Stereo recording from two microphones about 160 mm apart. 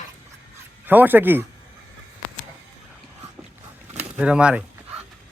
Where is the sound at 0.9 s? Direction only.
10° right (ahead or behind).